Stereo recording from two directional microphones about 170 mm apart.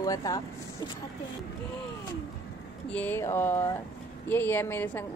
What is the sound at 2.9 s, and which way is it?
A woman's voice, 10° left (ahead or behind).